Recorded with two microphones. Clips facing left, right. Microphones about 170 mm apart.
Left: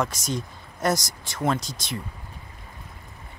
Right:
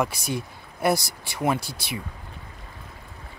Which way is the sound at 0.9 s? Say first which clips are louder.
Right 2 dB; 60° right (ahead or behind).